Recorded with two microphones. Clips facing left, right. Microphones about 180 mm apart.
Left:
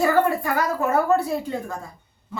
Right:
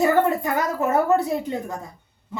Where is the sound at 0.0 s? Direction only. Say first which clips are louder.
Right 1 dB; 20° right (ahead or behind).